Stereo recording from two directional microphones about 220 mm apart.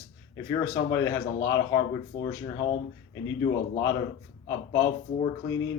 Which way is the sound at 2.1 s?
55° left (ahead or behind).